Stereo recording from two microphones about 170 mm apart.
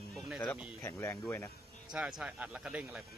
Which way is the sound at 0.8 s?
15° left (ahead or behind).